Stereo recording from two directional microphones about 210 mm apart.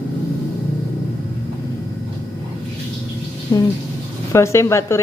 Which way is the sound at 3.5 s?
20° left (ahead or behind).